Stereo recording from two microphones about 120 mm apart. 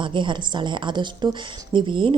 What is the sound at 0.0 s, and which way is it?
A woman's voice, 40° right (ahead or behind).